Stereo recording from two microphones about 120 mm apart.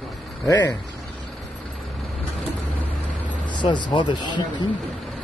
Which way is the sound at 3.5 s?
40° left (ahead or behind).